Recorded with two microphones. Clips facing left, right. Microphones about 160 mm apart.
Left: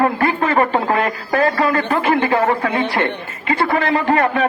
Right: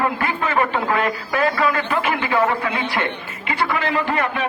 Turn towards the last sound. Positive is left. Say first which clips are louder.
# left 5 dB
turn(degrees=40)  # may be behind; listen again after turning